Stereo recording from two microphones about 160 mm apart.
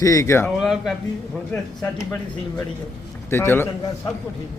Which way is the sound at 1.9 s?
15° left (ahead or behind).